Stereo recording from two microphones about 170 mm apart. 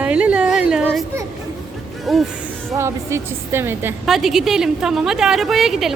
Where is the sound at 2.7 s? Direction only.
15° right (ahead or behind).